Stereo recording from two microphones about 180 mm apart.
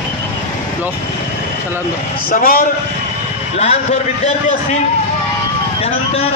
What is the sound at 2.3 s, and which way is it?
Speech, 50° left (ahead or behind).